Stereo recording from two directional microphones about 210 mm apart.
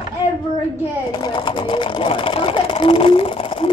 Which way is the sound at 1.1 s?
20° left (ahead or behind).